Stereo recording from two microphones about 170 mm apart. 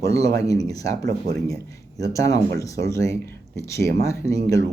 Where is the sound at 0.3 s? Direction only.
20° left (ahead or behind).